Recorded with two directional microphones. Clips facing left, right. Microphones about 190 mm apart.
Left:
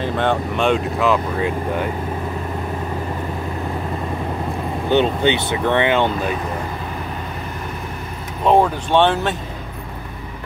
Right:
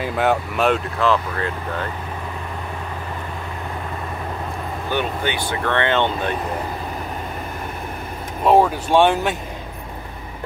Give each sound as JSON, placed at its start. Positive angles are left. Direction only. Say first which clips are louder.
{"t": 0.0, "sound": "speech", "louder": "even", "side_deg": -5}
{"t": 0.9, "sound": "speech", "louder": "left 2 dB", "side_deg": 10}
{"t": 4.8, "sound": "speech", "louder": "left 7 dB", "side_deg": 20}
{"t": 8.5, "sound": "speech", "louder": "even", "side_deg": -5}